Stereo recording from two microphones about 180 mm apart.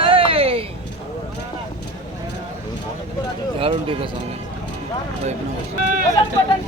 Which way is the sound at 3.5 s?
30° right (ahead or behind).